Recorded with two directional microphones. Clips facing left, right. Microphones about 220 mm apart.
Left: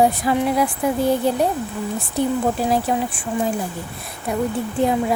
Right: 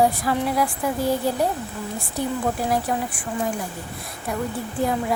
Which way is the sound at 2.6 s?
25° left (ahead or behind).